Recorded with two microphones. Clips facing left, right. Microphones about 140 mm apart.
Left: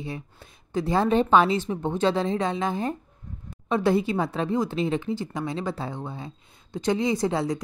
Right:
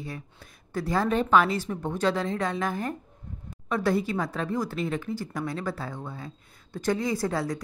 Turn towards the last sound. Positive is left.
turn(degrees=20)  # may be behind; listen again after turning